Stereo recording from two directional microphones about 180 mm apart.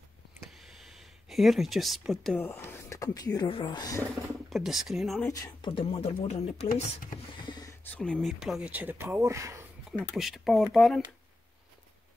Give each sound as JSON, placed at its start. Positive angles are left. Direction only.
{"t": 0.8, "sound": "speech", "side_deg": 0}
{"t": 4.5, "sound": "speech", "side_deg": 0}
{"t": 5.3, "sound": "speech", "side_deg": 20}
{"t": 5.7, "sound": "speech", "side_deg": 35}
{"t": 7.9, "sound": "speech", "side_deg": 5}
{"t": 9.8, "sound": "speech", "side_deg": 0}